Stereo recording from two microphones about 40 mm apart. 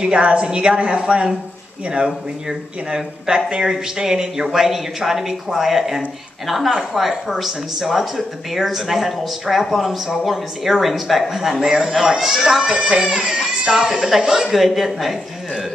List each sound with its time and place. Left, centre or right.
0.0 s a woman's voice: right; by 12.7 s centre
12.9 s a woman's voice: right; by 15.6 s centre